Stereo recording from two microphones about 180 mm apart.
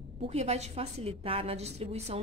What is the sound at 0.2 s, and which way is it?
Speech, 35° right (ahead or behind).